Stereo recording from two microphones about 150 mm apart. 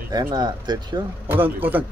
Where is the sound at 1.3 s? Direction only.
10° right (ahead or behind).